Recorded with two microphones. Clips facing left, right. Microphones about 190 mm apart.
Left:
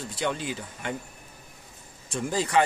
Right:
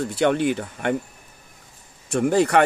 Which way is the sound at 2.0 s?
65° right (ahead or behind).